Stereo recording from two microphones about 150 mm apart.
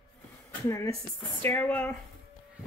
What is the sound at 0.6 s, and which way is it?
Speech, 20° left (ahead or behind).